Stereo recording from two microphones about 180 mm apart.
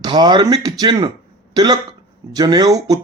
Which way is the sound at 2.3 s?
20° right (ahead or behind).